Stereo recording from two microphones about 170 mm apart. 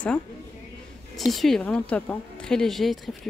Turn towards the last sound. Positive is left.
turn(degrees=0)  # may be behind; listen again after turning